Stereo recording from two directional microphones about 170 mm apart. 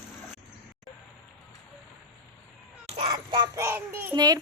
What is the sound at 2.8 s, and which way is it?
Child singing, 35° right (ahead or behind).